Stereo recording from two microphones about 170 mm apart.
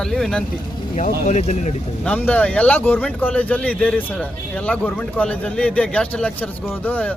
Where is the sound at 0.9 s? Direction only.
50° left (ahead or behind).